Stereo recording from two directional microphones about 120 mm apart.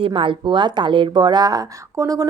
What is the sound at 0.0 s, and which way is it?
Speech, 45° right (ahead or behind).